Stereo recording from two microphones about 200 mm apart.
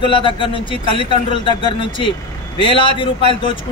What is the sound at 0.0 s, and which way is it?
Speech, 25° left (ahead or behind).